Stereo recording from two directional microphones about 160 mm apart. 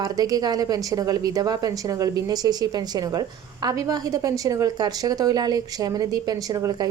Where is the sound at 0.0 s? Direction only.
25° right (ahead or behind).